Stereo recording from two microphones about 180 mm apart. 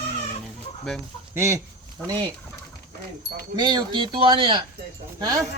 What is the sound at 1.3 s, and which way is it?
Speech, 15° right (ahead or behind).